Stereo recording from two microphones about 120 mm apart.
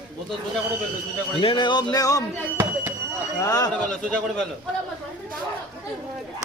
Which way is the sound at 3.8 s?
5° left (ahead or behind).